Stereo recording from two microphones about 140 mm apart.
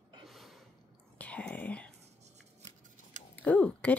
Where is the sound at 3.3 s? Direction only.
10° left (ahead or behind).